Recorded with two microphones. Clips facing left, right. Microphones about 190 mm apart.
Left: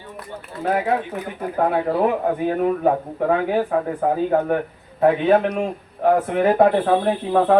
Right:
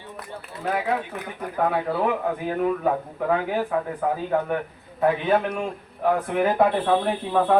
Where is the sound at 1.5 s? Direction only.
40° left (ahead or behind).